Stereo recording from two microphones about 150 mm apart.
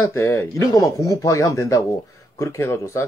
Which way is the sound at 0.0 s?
15° left (ahead or behind).